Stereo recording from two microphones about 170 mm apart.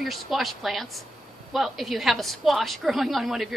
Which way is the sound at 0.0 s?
Centre (ahead or behind).